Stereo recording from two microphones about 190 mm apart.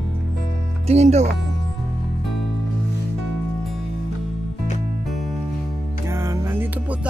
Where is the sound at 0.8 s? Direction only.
35° right (ahead or behind).